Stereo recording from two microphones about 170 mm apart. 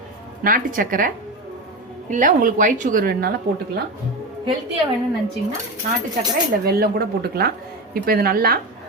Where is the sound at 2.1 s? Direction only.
50° right (ahead or behind).